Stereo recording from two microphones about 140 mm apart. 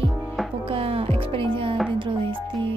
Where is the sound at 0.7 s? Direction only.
45° right (ahead or behind).